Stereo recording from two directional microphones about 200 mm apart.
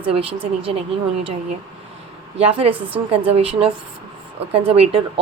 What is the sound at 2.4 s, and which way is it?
A woman's voice, 30° right (ahead or behind).